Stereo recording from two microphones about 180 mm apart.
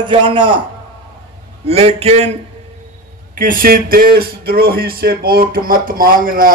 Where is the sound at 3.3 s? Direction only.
50° right (ahead or behind).